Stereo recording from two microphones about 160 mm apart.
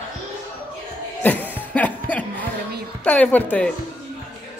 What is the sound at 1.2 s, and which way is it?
Cough, 10° left (ahead or behind).